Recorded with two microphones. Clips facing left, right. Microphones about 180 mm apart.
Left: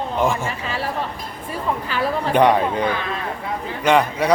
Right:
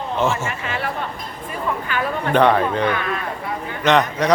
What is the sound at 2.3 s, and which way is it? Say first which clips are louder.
A man's voice: right 1 dB; 15° left (ahead or behind).